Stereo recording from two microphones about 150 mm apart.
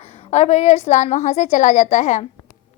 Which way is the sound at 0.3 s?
45° left (ahead or behind).